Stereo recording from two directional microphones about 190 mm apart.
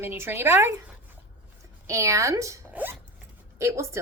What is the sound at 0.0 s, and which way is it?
Speech, 10° right (ahead or behind).